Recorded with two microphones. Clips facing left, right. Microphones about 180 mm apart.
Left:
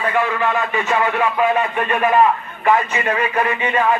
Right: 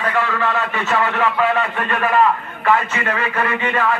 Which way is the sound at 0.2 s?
15° left (ahead or behind).